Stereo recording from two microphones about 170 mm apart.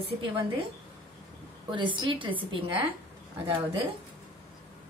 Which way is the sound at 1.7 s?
30° right (ahead or behind).